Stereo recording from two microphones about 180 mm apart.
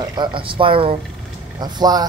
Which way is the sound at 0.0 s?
25° right (ahead or behind).